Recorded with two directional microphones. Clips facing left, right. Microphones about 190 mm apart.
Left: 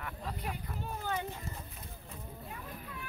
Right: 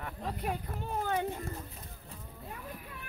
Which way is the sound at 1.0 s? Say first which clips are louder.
Right 4 dB; 55° right (ahead or behind).